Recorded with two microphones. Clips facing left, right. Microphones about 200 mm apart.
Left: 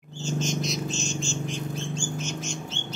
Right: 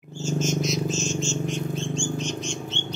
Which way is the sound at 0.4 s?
5° right (ahead or behind).